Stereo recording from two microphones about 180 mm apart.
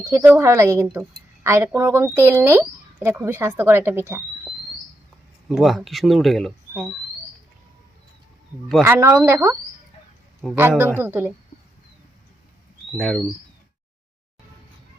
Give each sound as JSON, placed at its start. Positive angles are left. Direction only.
{"t": 0.0, "sound": "speech", "side_deg": -15}
{"t": 5.5, "sound": "speech", "side_deg": 0}
{"t": 8.8, "sound": "speech", "side_deg": -15}
{"t": 12.9, "sound": "speech", "side_deg": 0}